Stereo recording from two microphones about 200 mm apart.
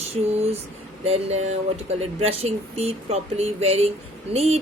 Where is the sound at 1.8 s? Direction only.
30° right (ahead or behind).